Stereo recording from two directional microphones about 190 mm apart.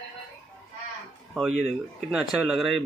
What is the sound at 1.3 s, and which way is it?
A man's voice, centre (ahead or behind).